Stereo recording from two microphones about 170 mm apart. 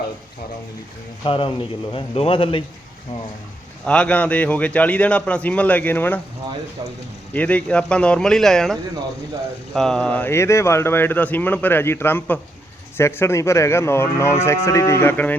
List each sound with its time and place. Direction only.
1.2 s a man's voice: 30° left (ahead or behind)
3.8 s speech: 5° left (ahead or behind)
7.3 s speech: 10° left (ahead or behind)